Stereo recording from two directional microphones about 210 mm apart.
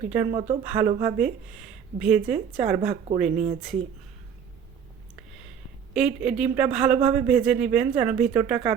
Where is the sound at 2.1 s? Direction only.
40° right (ahead or behind).